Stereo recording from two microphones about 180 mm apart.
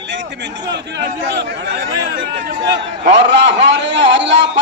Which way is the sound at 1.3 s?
75° right (ahead or behind).